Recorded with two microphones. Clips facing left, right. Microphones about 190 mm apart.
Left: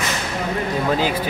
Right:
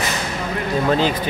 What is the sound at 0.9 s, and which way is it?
Speech, 10° left (ahead or behind).